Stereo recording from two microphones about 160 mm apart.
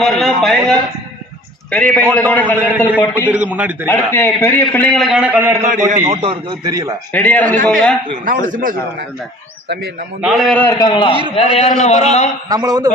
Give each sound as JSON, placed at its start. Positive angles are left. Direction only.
{"t": 0.0, "sound": "a man's voice", "side_deg": 0}
{"t": 2.6, "sound": "a man's voice", "side_deg": -10}
{"t": 3.0, "sound": "a man's voice", "side_deg": 10}
{"t": 3.3, "sound": "a man's voice", "side_deg": -10}
{"t": 3.8, "sound": "a man's voice", "side_deg": 15}
{"t": 6.1, "sound": "a man's voice", "side_deg": -35}
{"t": 7.1, "sound": "a man's voice", "side_deg": 10}
{"t": 8.2, "sound": "a man's voice", "side_deg": -55}
{"t": 10.2, "sound": "a man's voice", "side_deg": 0}
{"t": 10.7, "sound": "a man's voice", "side_deg": 25}
{"t": 12.5, "sound": "a man's voice", "side_deg": -25}